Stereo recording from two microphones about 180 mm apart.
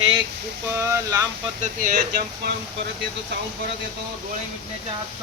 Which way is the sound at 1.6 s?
50° right (ahead or behind).